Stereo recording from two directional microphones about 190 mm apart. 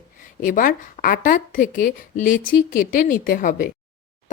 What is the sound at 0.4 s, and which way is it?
A woman's voice, 45° left (ahead or behind).